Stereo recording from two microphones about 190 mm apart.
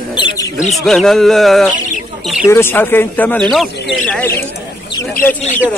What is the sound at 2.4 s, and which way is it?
Speech, 15° left (ahead or behind).